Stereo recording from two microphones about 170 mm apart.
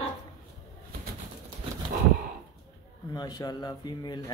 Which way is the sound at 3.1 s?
25° left (ahead or behind).